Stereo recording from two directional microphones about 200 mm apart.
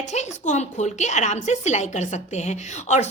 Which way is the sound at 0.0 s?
35° left (ahead or behind).